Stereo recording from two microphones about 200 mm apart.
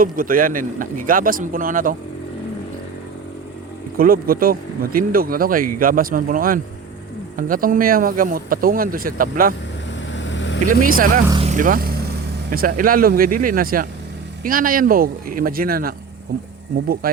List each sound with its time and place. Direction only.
0.0 s speech: 45° right (ahead or behind)
3.9 s speech: 45° right (ahead or behind)
10.1 s vehicle: 65° left (ahead or behind)
10.7 s speech: 45° right (ahead or behind)
11.4 s vehicle: 40° right (ahead or behind)
12.5 s speech: 45° right (ahead or behind)